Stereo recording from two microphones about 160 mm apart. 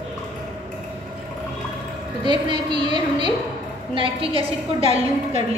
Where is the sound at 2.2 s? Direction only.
30° right (ahead or behind).